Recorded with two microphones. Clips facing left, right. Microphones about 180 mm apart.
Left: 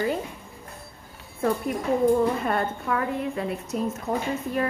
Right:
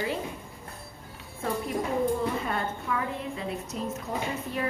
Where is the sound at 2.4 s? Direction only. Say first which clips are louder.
Left 5 dB; 55° left (ahead or behind).